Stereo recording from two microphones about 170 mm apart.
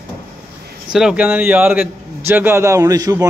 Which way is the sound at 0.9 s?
5° right (ahead or behind).